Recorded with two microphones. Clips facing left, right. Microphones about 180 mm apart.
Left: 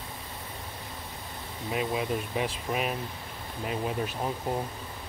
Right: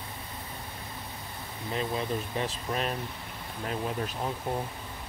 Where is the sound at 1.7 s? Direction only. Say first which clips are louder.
Left 2 dB; 10° left (ahead or behind).